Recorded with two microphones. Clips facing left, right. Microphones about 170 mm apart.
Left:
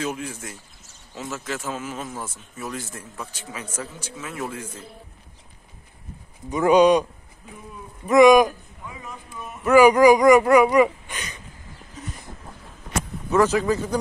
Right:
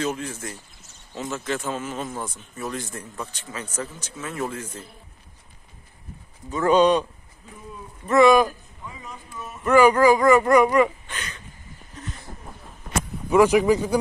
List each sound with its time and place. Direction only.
0.0 s speech: 10° left (ahead or behind)
6.5 s speech: 10° left (ahead or behind)
8.1 s speech: 15° left (ahead or behind)
13.3 s speech: 15° right (ahead or behind)